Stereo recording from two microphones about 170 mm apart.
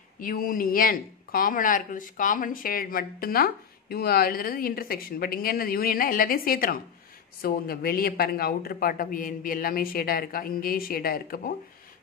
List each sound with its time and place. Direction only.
0.2 s speech: 55° left (ahead or behind)